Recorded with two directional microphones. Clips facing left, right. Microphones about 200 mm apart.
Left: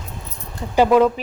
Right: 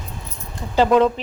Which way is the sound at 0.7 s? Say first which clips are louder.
Left 1 dB; 10° left (ahead or behind).